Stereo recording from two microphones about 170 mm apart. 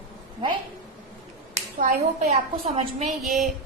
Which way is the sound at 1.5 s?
50° right (ahead or behind).